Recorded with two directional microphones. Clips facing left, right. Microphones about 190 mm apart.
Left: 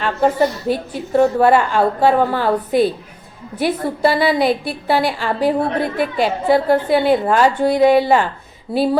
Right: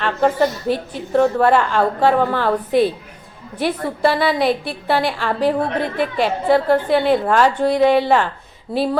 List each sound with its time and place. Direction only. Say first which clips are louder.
0.0 s a woman's voice: left 1 dB; 5° left (ahead or behind)